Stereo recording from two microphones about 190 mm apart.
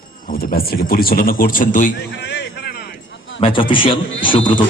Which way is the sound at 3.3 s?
25° left (ahead or behind).